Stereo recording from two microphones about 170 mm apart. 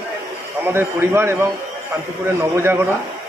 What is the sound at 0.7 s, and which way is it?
Speech, 15° right (ahead or behind).